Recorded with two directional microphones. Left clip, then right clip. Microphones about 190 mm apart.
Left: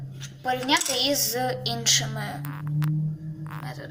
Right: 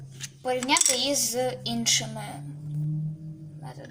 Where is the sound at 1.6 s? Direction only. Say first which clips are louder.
Left 3 dB; 30° right (ahead or behind).